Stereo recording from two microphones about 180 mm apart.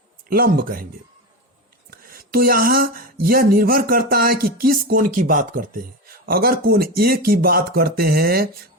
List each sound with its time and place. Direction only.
0.3 s speech: 55° right (ahead or behind)
1.9 s speech: 55° right (ahead or behind)